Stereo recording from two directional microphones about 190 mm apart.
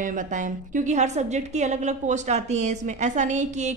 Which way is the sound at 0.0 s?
45° right (ahead or behind).